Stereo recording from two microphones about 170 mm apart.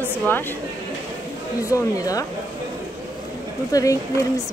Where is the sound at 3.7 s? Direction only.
20° left (ahead or behind).